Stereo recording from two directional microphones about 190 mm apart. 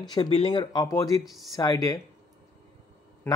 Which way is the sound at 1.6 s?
20° left (ahead or behind).